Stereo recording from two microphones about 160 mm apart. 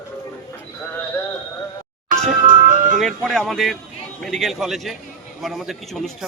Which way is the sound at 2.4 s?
55° right (ahead or behind).